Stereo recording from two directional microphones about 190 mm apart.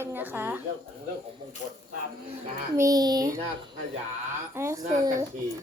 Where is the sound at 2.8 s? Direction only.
20° right (ahead or behind).